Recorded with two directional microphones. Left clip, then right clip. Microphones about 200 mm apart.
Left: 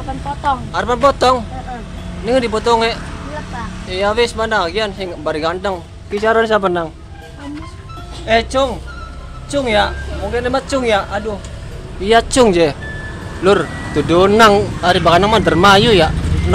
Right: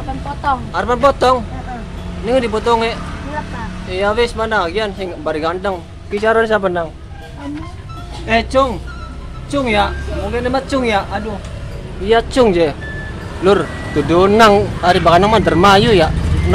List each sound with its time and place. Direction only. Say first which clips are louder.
0.5 s speech: right 1 dB; 10° left (ahead or behind)
8.3 s speech: even; 10° left (ahead or behind)
12.0 s speech: left 1 dB; 15° left (ahead or behind)